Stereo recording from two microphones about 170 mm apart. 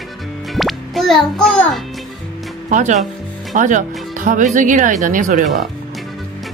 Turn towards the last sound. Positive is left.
turn(degrees=-50)  # may be behind; listen again after turning